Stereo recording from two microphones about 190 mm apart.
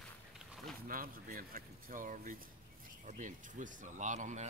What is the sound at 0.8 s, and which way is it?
Speech, 50° right (ahead or behind).